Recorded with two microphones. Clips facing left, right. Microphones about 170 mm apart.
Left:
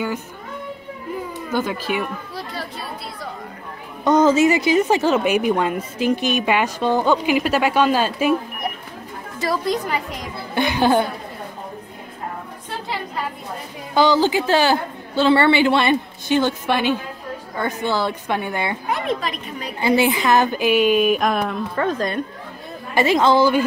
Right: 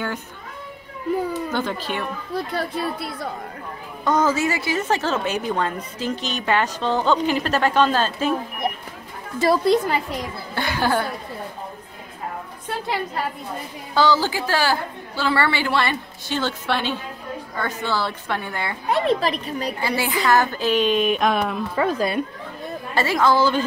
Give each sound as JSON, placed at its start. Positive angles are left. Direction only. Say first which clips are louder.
{"t": 1.5, "sound": "a woman's voice", "louder": "left 3 dB", "side_deg": 10}
{"t": 4.0, "sound": "a woman's voice", "louder": "left 6 dB", "side_deg": 20}
{"t": 9.4, "sound": "a woman's voice", "louder": "right 5 dB", "side_deg": -30}
{"t": 10.5, "sound": "a woman's voice", "louder": "left 5 dB", "side_deg": 20}
{"t": 13.9, "sound": "a woman's voice", "louder": "left 3 dB", "side_deg": 15}
{"t": 18.9, "sound": "a woman's voice", "louder": "right 8 dB", "side_deg": -35}
{"t": 19.8, "sound": "a woman's voice", "louder": "left 8 dB", "side_deg": 20}
{"t": 22.9, "sound": "a woman's voice", "louder": "left 3 dB", "side_deg": 20}